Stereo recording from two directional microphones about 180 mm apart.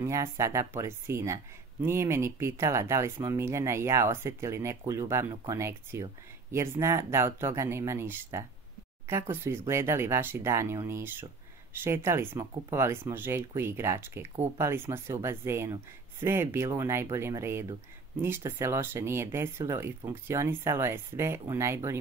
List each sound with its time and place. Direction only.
0.0 s speech: 15° right (ahead or behind)